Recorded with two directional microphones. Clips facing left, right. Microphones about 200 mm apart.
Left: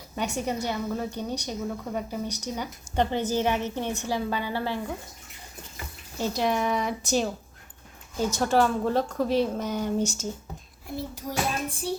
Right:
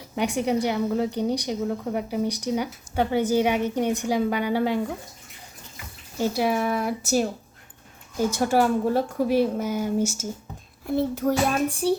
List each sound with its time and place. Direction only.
0.2 s a woman's voice: 15° right (ahead or behind)
6.1 s a woman's voice: 10° right (ahead or behind)
10.8 s child singing: 60° right (ahead or behind)